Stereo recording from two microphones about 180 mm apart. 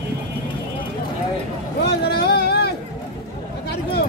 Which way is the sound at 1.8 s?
65° left (ahead or behind).